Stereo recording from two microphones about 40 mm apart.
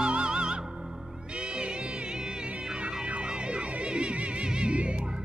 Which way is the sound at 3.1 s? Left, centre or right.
Right.